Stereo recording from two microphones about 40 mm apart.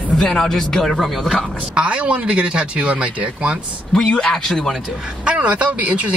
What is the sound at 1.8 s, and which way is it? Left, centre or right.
Speech, right.